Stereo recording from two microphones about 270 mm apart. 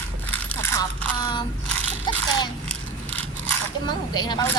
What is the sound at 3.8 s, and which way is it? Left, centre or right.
Speech, centre.